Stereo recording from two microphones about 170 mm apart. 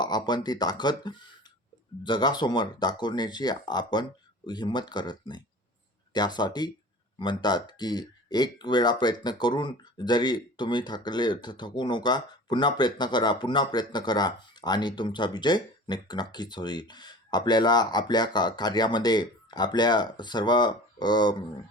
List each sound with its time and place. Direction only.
0.0 s speech: 25° left (ahead or behind)